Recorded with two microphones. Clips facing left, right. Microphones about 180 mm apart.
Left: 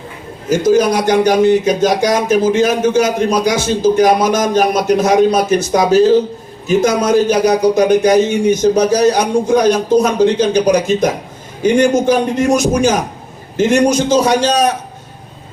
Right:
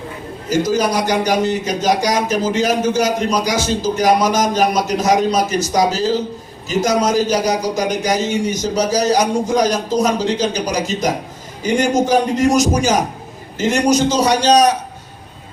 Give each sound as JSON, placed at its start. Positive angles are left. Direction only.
{"t": 0.5, "sound": "a man's voice", "side_deg": 55}